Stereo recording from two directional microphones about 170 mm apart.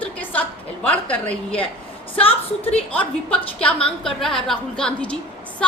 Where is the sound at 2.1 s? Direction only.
35° left (ahead or behind).